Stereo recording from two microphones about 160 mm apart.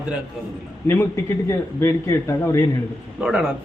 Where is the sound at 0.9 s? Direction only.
15° left (ahead or behind).